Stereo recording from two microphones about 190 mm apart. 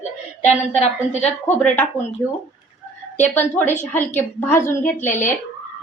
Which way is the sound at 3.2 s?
10° left (ahead or behind).